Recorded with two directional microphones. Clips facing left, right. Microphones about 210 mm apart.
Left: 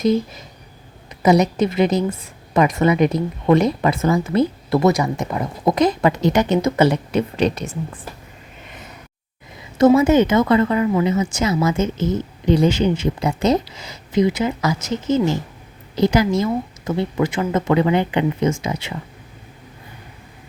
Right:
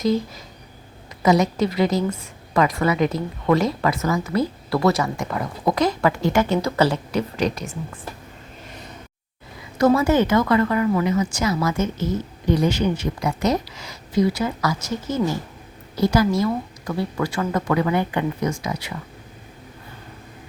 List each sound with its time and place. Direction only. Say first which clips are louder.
0.0 s a woman's voice: left 3 dB; 20° left (ahead or behind)
9.7 s a woman's voice: left 4 dB; 20° left (ahead or behind)